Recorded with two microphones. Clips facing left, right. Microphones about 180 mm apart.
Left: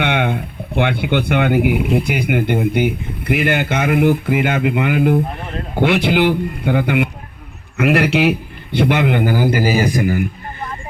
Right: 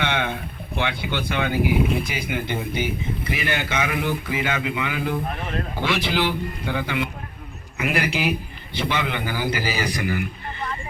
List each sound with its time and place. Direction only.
0.0 s a sound: 60° left (ahead or behind)
0.8 s speech: 60° left (ahead or behind)
7.8 s a man's voice: 70° left (ahead or behind); by 10.2 s 45° left (ahead or behind)